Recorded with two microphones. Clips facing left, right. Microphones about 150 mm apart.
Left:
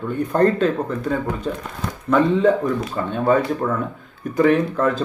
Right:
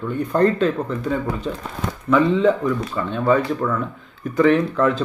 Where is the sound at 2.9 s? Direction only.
45° left (ahead or behind).